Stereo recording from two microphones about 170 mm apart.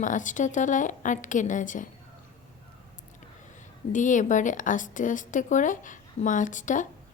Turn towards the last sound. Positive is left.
turn(degrees=50)  # may be behind; listen again after turning